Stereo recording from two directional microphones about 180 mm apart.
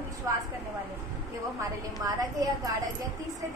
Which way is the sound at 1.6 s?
20° right (ahead or behind).